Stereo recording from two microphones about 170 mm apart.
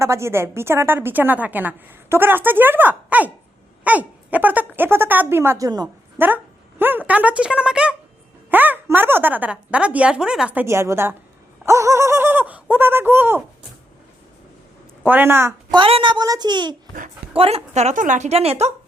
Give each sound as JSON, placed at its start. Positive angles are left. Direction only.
{"t": 0.0, "sound": "a woman's voice", "side_deg": -15}
{"t": 6.1, "sound": "a woman's voice", "side_deg": -10}
{"t": 15.0, "sound": "a woman's voice", "side_deg": -10}
{"t": 15.7, "sound": "a woman's voice", "side_deg": -30}